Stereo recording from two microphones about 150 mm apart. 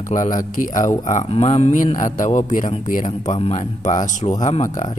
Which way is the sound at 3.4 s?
45° left (ahead or behind).